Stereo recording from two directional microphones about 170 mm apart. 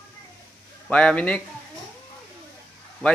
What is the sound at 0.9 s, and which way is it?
Speech, 5° left (ahead or behind).